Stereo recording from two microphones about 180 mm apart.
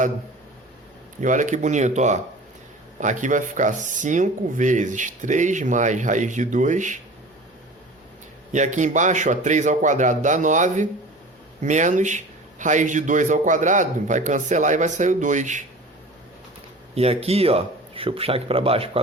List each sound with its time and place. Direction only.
1.2 s speech: 45° right (ahead or behind)
8.5 s speech: 40° right (ahead or behind)
16.9 s speech: 35° right (ahead or behind)